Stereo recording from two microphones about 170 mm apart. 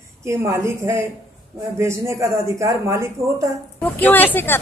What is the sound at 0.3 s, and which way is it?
Speech, 15° right (ahead or behind).